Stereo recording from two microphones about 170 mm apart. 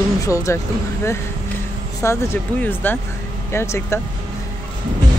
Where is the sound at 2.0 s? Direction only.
15° left (ahead or behind).